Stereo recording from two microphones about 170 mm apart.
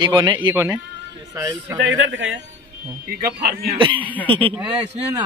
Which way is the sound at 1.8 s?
90° right.